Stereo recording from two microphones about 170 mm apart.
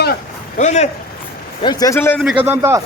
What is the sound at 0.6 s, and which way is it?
Speech, 45° left (ahead or behind).